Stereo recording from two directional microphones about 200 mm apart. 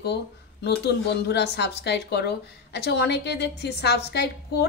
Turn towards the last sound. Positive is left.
turn(degrees=55)  # may be behind; listen again after turning